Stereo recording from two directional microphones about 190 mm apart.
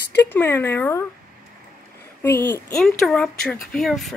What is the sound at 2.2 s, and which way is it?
Speech, 10° left (ahead or behind).